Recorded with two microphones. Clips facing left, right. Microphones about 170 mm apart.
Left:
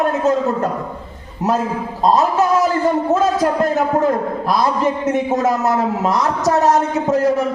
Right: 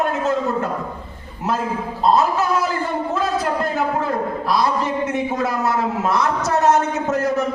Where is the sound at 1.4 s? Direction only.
40° left (ahead or behind).